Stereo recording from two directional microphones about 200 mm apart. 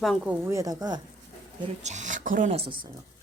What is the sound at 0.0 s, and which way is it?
Speech, centre (ahead or behind).